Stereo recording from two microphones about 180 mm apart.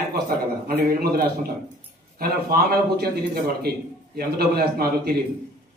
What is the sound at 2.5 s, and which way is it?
A man's voice, 60° right (ahead or behind).